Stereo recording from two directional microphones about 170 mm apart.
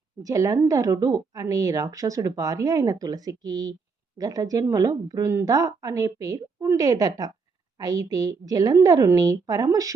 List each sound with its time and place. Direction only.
0.2 s a woman's voice: 20° right (ahead or behind)